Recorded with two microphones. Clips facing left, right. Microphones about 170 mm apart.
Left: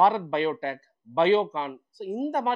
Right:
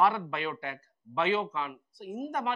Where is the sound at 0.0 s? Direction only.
30° left (ahead or behind).